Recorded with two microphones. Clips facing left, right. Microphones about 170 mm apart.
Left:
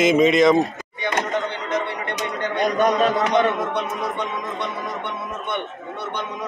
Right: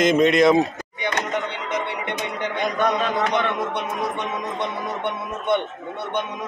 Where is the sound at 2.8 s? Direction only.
40° left (ahead or behind).